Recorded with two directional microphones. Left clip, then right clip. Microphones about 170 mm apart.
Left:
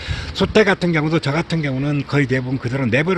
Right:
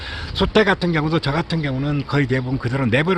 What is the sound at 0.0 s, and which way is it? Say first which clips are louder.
Speech: left 1 dB; 20° left (ahead or behind).